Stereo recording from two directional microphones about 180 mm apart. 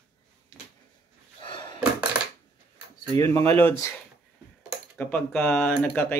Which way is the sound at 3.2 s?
20° left (ahead or behind).